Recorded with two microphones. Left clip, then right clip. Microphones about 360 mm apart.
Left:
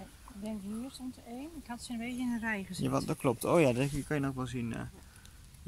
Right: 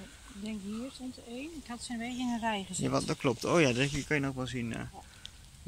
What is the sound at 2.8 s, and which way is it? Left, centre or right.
Speech, centre.